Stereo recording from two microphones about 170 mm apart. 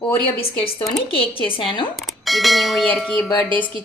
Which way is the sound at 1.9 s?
Centre (ahead or behind).